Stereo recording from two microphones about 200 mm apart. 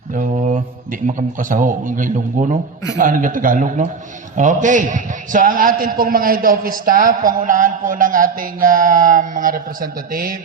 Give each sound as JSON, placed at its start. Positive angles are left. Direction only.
{"t": 0.1, "sound": "a man's voice", "side_deg": -40}